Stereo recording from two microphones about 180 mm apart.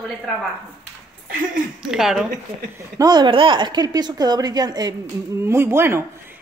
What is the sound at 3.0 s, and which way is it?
A woman's voice, 25° right (ahead or behind).